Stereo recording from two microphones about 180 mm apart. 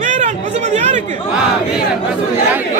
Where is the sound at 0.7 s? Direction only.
40° right (ahead or behind).